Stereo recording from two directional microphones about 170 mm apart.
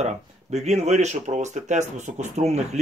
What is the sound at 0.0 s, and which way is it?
Speech, 40° right (ahead or behind).